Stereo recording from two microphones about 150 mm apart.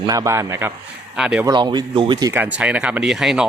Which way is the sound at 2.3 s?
10° right (ahead or behind).